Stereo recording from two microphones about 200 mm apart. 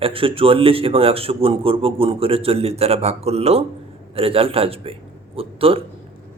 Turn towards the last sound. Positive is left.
turn(degrees=-30)  # may be behind; listen again after turning